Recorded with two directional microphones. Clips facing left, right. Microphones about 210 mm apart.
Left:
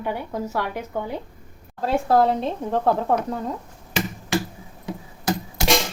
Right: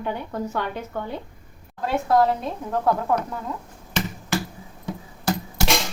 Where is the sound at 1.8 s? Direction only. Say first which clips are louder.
Left 1 dB; 30° left (ahead or behind).